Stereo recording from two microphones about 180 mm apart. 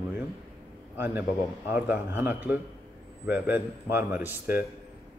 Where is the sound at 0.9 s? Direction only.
10° right (ahead or behind).